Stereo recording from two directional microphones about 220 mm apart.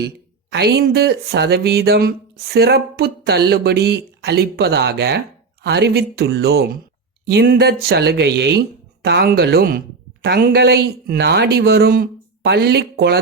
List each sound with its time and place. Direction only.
0.5 s speech: 50° right (ahead or behind)